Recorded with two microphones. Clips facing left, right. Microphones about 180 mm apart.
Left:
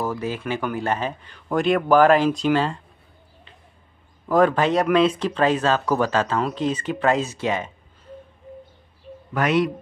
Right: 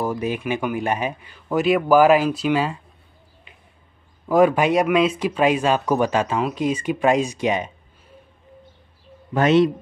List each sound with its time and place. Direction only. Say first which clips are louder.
0.0 s speech: right 2 dB; 15° right (ahead or behind)
4.3 s speech: right 2 dB; 10° right (ahead or behind)
9.3 s speech: right 5 dB; 25° right (ahead or behind)